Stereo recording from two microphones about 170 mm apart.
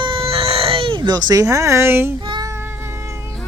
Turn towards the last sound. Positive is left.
turn(degrees=-15)  # may be behind; listen again after turning